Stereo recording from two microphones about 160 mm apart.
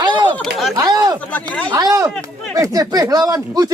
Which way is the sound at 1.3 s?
10° left (ahead or behind).